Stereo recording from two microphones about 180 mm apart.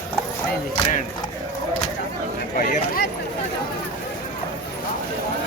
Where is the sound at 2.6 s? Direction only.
50° left (ahead or behind).